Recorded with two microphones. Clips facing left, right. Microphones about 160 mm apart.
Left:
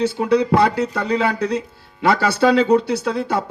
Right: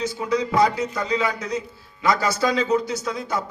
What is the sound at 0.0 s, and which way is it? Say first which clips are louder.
Speech: left 7 dB; 65° left (ahead or behind).